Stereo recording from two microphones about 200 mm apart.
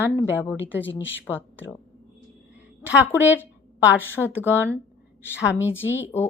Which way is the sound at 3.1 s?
10° right (ahead or behind).